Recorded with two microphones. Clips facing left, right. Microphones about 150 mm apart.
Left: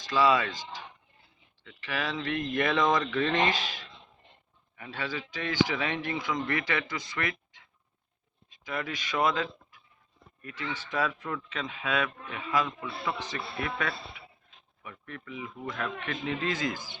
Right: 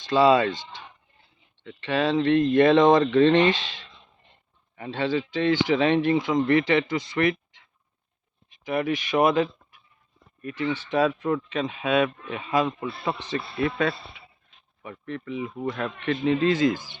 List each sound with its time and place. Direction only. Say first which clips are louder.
0.0 s speech: right 6 dB; 30° right (ahead or behind)
1.6 s speech: right 10 dB; 30° right (ahead or behind)
8.6 s speech: right 10 dB; 25° right (ahead or behind)